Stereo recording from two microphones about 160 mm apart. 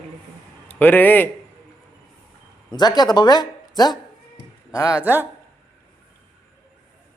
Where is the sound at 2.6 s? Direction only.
25° left (ahead or behind).